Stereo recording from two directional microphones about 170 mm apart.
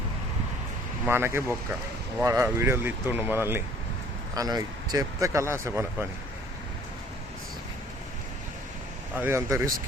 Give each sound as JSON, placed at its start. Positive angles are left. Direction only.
{"t": 1.0, "sound": "speech", "side_deg": -15}
{"t": 9.1, "sound": "speech", "side_deg": -15}